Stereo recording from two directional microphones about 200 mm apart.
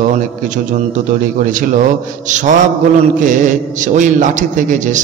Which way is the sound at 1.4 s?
40° right (ahead or behind).